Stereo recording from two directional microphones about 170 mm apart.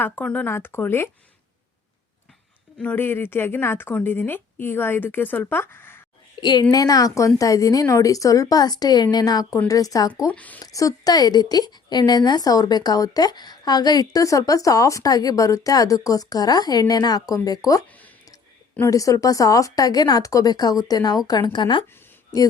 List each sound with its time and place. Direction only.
0.0 s speech: 10° left (ahead or behind)
2.7 s speech: 10° left (ahead or behind)
6.4 s a woman's voice: 25° left (ahead or behind)
10.2 s speech: 10° left (ahead or behind)
10.6 s a woman's voice: 20° left (ahead or behind)